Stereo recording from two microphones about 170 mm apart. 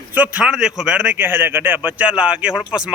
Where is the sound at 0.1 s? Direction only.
10° right (ahead or behind).